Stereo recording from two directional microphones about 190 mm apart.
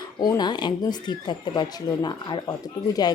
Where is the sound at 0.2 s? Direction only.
20° left (ahead or behind).